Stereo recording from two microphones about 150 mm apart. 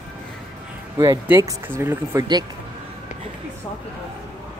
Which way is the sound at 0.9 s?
25° right (ahead or behind).